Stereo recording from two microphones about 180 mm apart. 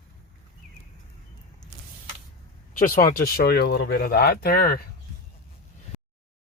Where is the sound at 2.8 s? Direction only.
50° left (ahead or behind).